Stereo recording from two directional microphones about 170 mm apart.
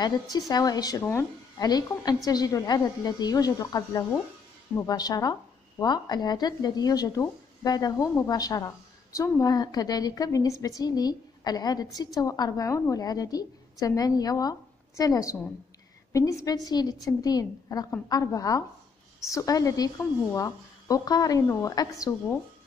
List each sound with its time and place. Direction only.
0.0 s speech: 25° left (ahead or behind)